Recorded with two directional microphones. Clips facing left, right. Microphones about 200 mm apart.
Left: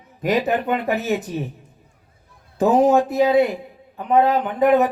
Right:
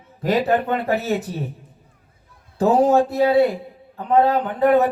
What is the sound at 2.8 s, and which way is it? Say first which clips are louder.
Speech: left 1 dB; 15° left (ahead or behind).